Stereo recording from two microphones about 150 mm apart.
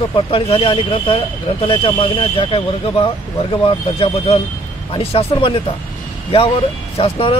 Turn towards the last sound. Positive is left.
turn(degrees=40)  # may be behind; listen again after turning